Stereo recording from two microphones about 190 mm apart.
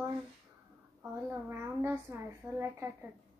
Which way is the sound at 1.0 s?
10° right (ahead or behind).